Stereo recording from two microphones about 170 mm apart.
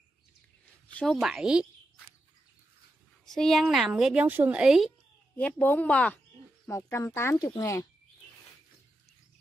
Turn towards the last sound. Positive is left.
turn(degrees=20)  # may be behind; listen again after turning